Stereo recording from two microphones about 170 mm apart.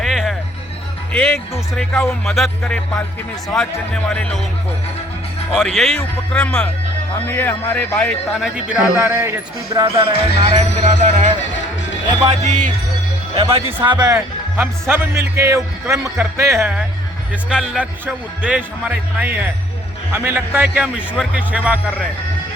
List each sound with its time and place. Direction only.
0.0 s music: centre (ahead or behind)
1.1 s speech: 5° left (ahead or behind)
5.5 s a man's voice: centre (ahead or behind)
8.4 s speech: 5° right (ahead or behind)
9.8 s speech: 35° right (ahead or behind)
12.5 s speech: 45° right (ahead or behind)
13.3 s speech: 35° right (ahead or behind)
14.2 s speech: 10° right (ahead or behind)